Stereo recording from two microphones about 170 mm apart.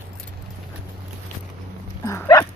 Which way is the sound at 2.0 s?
20° left (ahead or behind).